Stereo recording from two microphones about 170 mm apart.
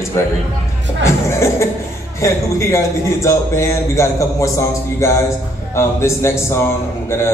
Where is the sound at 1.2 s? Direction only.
15° left (ahead or behind).